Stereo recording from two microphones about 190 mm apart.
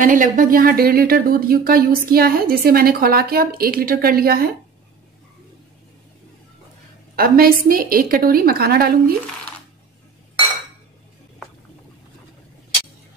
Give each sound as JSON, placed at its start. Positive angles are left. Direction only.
{"t": 0.0, "sound": "speech", "side_deg": -45}
{"t": 7.2, "sound": "speech", "side_deg": -50}